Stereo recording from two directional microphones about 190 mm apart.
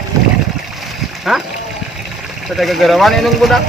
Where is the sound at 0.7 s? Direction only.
Centre (ahead or behind).